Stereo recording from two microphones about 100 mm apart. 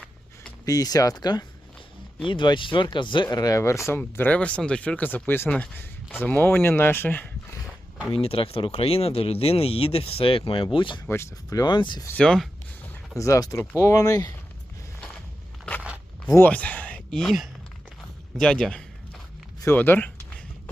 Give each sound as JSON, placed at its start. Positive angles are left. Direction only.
{"t": 0.6, "sound": "speech", "side_deg": 35}
{"t": 3.2, "sound": "speech", "side_deg": 40}
{"t": 8.1, "sound": "speech", "side_deg": 70}
{"t": 11.0, "sound": "speech", "side_deg": 25}
{"t": 11.4, "sound": "speech", "side_deg": 40}
{"t": 12.1, "sound": "a man's voice", "side_deg": 10}
{"t": 13.1, "sound": "speech", "side_deg": 35}
{"t": 16.5, "sound": "a man's voice", "side_deg": 15}
{"t": 19.6, "sound": "speech", "side_deg": 20}